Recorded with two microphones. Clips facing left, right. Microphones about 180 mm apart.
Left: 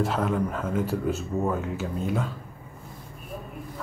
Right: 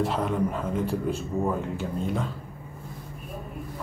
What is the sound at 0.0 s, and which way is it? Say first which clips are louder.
A man's voice: even; centre (ahead or behind).